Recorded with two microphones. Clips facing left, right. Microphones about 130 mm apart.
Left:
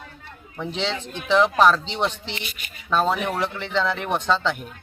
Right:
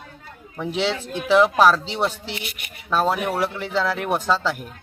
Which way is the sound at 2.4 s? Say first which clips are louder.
Right 2 dB; 70° right (ahead or behind).